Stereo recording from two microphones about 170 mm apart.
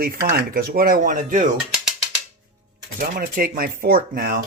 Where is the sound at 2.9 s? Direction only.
60° right (ahead or behind).